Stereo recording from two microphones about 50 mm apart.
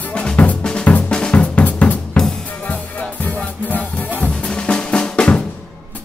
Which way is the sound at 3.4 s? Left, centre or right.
Left.